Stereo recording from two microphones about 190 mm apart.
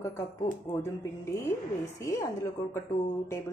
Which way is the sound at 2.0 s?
15° left (ahead or behind).